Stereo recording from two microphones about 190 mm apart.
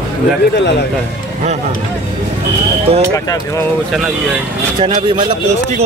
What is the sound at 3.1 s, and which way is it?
Speech, 15° left (ahead or behind).